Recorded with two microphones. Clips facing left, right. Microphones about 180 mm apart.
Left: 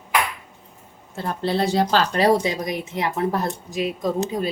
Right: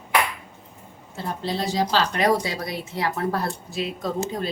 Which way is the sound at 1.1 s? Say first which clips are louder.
Left 4 dB; 60° left (ahead or behind).